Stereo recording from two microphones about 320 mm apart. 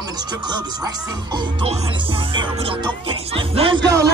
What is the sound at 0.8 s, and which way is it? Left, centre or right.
Music, centre.